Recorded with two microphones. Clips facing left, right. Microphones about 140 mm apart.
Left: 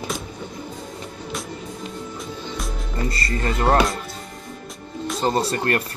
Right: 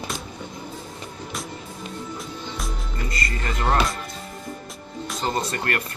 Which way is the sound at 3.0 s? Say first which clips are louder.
Left 6 dB; 30° left (ahead or behind).